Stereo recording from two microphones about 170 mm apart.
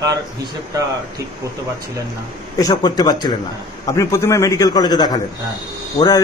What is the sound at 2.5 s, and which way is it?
Speech, 20° left (ahead or behind).